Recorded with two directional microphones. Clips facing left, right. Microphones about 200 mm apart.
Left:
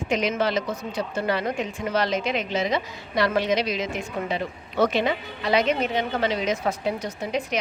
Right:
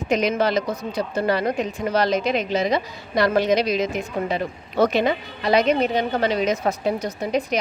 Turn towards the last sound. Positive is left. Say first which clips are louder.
# right 4 dB
turn(degrees=-40)  # may be behind; listen again after turning